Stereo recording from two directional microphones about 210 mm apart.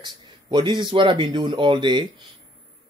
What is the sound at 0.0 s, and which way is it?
Speech, 20° right (ahead or behind).